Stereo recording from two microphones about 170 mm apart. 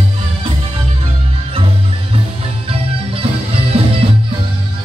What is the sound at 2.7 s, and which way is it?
Music, 35° right (ahead or behind).